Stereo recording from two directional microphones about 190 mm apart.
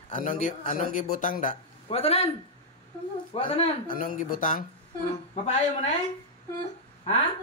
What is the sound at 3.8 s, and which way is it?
Speech, 45° left (ahead or behind).